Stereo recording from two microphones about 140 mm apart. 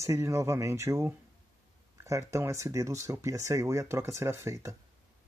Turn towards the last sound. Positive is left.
turn(degrees=-20)  # may be behind; listen again after turning